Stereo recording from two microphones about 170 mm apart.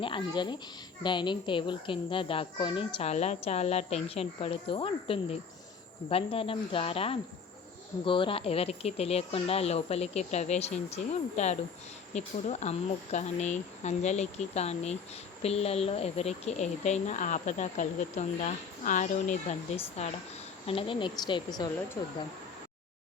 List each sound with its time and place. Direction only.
0.0 s a woman's voice: 30° left (ahead or behind)